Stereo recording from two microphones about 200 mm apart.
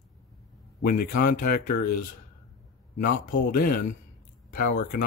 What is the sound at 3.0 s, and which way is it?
Speech, 45° left (ahead or behind).